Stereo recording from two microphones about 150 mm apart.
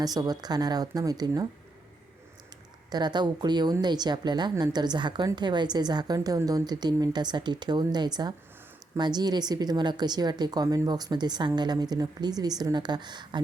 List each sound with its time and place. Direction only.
0.0 s a woman's voice: 25° right (ahead or behind)
2.9 s a woman's voice: 30° right (ahead or behind)